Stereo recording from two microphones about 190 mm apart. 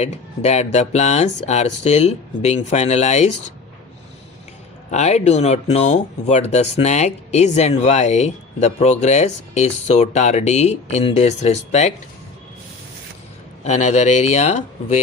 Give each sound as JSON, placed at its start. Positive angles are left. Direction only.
{"t": 0.0, "sound": "speech", "side_deg": 35}
{"t": 4.9, "sound": "speech", "side_deg": 35}
{"t": 13.7, "sound": "speech", "side_deg": 35}